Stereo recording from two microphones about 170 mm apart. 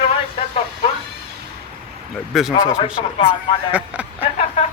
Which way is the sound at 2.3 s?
Centre (ahead or behind).